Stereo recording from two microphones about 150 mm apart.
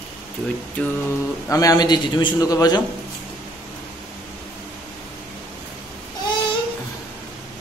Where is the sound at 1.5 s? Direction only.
25° left (ahead or behind).